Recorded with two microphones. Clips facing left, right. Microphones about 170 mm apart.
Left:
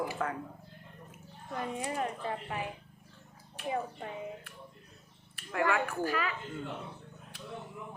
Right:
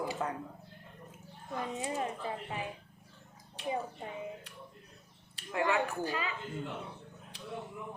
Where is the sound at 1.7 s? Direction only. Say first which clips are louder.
Left 1 dB; 20° right (ahead or behind).